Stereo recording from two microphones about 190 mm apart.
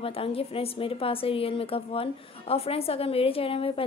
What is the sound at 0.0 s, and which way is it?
A woman's voice, 30° left (ahead or behind).